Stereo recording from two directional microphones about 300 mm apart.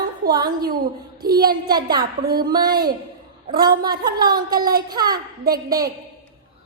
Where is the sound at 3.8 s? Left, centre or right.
Centre.